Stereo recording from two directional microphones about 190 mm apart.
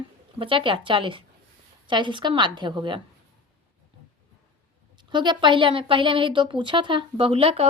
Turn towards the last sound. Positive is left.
turn(degrees=-30)  # may be behind; listen again after turning